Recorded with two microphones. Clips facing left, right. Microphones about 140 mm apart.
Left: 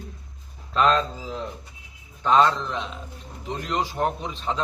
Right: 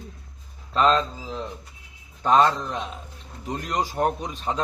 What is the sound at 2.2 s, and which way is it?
Speech, 45° right (ahead or behind).